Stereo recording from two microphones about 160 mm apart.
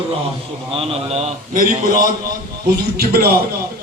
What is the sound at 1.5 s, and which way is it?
Speech, 60° right (ahead or behind).